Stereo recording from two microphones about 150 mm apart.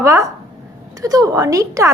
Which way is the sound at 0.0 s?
20° right (ahead or behind).